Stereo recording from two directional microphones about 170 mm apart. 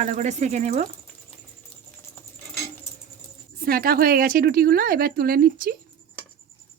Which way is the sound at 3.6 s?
60° right (ahead or behind).